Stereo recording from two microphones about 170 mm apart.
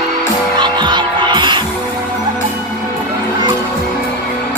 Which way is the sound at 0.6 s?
25° right (ahead or behind).